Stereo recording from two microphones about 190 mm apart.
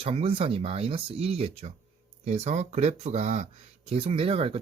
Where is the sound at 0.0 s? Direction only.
30° right (ahead or behind).